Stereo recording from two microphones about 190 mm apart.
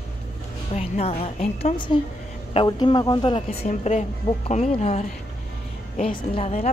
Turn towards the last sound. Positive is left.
turn(degrees=35)  # may be behind; listen again after turning